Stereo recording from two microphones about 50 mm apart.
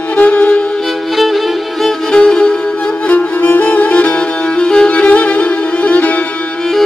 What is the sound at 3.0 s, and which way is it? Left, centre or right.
Music, left.